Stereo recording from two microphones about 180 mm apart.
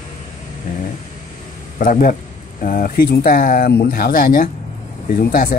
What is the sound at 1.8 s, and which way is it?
Speech, 50° left (ahead or behind).